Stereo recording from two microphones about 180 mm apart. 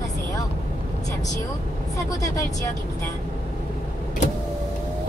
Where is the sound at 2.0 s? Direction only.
20° left (ahead or behind).